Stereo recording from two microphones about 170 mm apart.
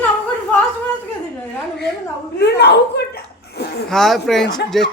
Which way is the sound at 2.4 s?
75° left (ahead or behind).